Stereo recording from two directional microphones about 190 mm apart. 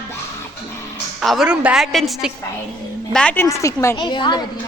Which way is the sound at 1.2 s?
Centre (ahead or behind).